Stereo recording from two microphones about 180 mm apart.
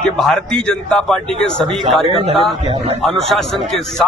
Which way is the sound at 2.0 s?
30° right (ahead or behind).